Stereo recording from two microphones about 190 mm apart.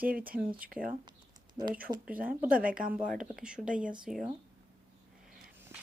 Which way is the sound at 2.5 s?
45° right (ahead or behind).